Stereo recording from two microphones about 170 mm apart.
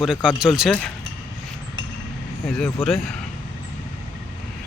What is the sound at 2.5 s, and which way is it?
Speech, 5° left (ahead or behind).